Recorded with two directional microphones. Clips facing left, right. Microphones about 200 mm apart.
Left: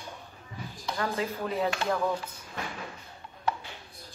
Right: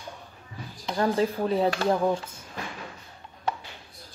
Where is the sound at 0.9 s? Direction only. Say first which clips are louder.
Right 7 dB; 30° right (ahead or behind).